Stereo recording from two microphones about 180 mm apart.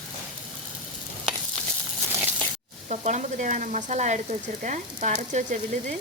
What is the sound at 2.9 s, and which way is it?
Frying, 40° right (ahead or behind).